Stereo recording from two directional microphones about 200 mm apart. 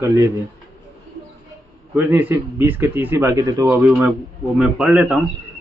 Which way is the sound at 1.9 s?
10° right (ahead or behind).